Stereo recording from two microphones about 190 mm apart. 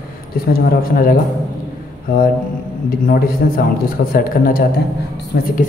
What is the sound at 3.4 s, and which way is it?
Speech, 55° left (ahead or behind).